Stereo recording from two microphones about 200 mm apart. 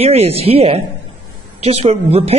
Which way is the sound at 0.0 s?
30° right (ahead or behind).